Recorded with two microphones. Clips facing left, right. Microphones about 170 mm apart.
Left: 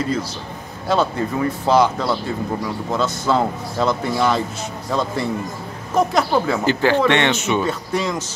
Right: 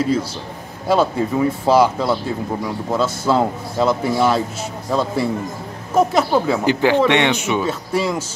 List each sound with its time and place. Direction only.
0.8 s a man's voice: 5° right (ahead or behind)